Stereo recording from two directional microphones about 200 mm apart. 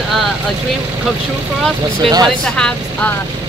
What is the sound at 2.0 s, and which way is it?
Speech, 20° right (ahead or behind).